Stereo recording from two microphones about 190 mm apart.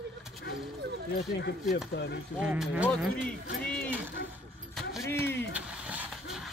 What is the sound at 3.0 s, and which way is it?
Speech, 5° left (ahead or behind).